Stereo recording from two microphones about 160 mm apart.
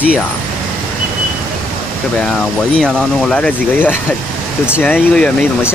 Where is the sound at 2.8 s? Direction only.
5° left (ahead or behind).